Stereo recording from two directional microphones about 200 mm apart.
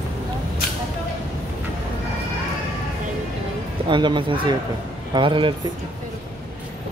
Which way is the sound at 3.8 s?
25° right (ahead or behind).